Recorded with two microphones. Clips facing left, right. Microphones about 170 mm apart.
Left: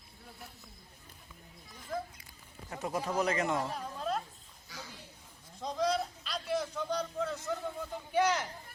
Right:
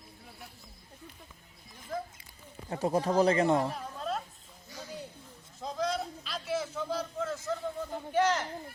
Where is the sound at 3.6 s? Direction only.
Centre (ahead or behind).